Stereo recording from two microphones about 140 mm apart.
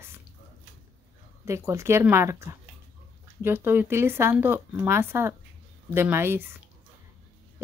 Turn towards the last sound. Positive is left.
turn(degrees=-15)  # may be behind; listen again after turning